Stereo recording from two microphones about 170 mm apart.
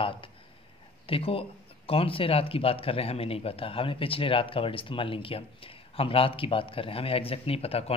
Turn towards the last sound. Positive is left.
turn(degrees=35)  # may be behind; listen again after turning